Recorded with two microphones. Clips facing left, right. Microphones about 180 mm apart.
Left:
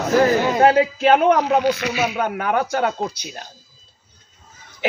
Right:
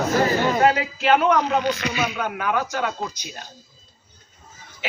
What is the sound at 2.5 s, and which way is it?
Speech, 45° left (ahead or behind).